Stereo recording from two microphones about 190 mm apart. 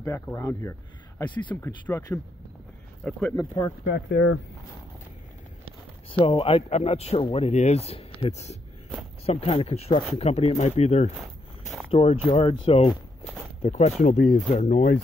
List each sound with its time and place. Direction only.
0.0 s speech: 15° left (ahead or behind)
3.3 s speech: 15° left (ahead or behind)
3.8 s speech: 70° left (ahead or behind)
6.0 s speech: 30° left (ahead or behind)